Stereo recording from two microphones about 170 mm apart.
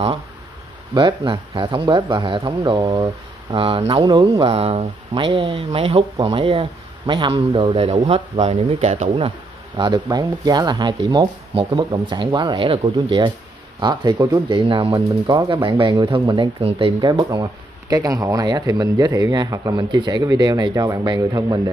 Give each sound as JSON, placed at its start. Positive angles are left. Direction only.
{"t": 0.9, "sound": "speech", "side_deg": -30}
{"t": 9.8, "sound": "speech", "side_deg": -25}